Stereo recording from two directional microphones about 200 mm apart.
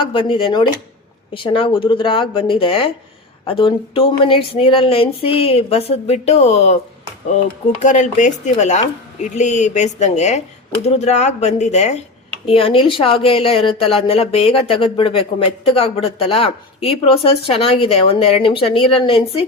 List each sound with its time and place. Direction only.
0.1 s speech: 25° left (ahead or behind)
7.8 s speech: 40° left (ahead or behind)